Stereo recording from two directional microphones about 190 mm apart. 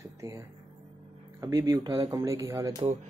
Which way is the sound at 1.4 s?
15° right (ahead or behind).